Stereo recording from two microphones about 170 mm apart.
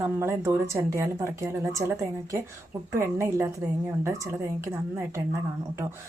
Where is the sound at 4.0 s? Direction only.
15° right (ahead or behind).